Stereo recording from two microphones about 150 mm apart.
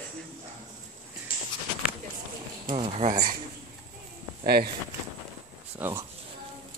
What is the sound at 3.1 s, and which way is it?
Speech, 70° right (ahead or behind).